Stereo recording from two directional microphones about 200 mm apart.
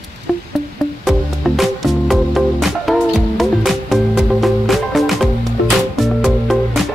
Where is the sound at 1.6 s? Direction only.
Centre (ahead or behind).